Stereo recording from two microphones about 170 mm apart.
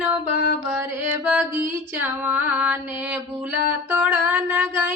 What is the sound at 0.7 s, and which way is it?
Female singing, 10° right (ahead or behind).